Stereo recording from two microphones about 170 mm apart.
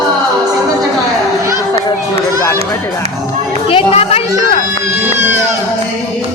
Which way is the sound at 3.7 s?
35° left (ahead or behind).